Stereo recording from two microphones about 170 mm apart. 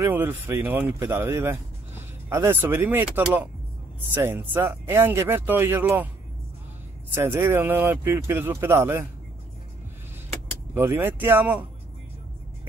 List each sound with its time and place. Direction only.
0.0 s speech: 10° right (ahead or behind)
7.1 s speech: 10° right (ahead or behind)
10.7 s speech: 15° right (ahead or behind)